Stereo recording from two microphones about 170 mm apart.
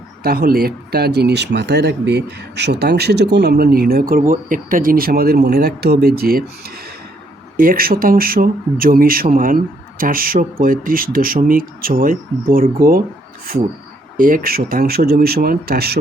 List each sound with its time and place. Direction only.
0.2 s speech: 65° right (ahead or behind)
14.2 s speech: 55° right (ahead or behind)